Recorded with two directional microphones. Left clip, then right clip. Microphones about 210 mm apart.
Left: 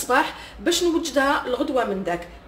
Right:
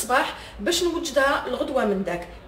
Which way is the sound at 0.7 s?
35° left (ahead or behind).